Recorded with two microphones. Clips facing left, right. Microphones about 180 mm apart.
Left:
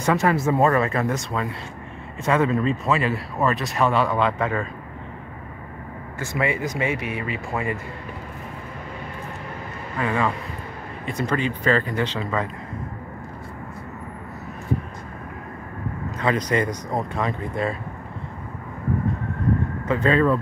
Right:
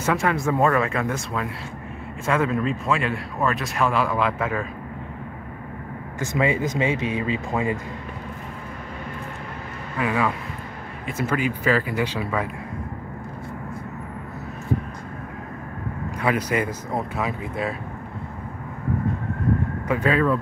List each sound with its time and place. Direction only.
0.0 s speech: centre (ahead or behind)
6.1 s speech: 20° right (ahead or behind)
9.9 s speech: 5° right (ahead or behind)
16.2 s speech: 10° right (ahead or behind)
19.9 s speech: 10° right (ahead or behind)